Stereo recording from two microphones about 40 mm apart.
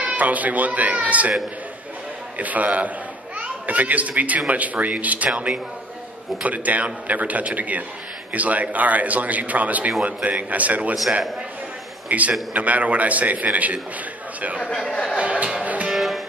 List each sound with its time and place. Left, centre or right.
0.2 s speech: right
2.3 s a child's voice: right
12.1 s speech: right
15.1 s music: right
15.9 s music: centre